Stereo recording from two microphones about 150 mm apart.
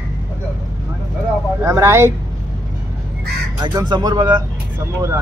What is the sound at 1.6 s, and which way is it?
Speech, 20° right (ahead or behind).